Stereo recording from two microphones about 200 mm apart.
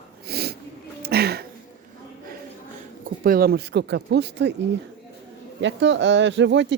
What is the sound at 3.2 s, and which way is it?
Speech, 50° right (ahead or behind).